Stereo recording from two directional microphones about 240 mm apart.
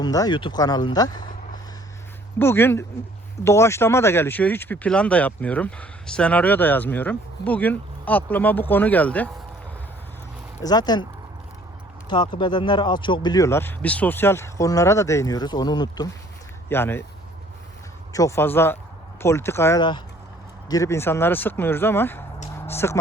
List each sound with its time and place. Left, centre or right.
0.0 s speech: centre
2.4 s speech: centre
10.6 s speech: centre
12.0 s speech: centre
18.1 s speech: centre
22.5 s a sound: centre